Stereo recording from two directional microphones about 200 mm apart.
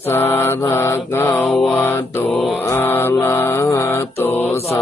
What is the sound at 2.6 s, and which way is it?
Mantra, 10° left (ahead or behind).